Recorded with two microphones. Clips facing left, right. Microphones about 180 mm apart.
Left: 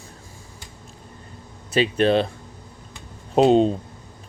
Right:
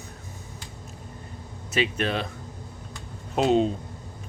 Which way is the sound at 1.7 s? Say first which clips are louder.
Left 8 dB; 30° left (ahead or behind).